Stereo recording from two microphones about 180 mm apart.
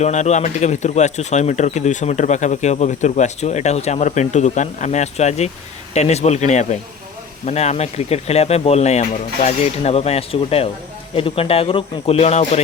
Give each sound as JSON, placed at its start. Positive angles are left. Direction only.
{"t": 0.0, "sound": "speech", "side_deg": 40}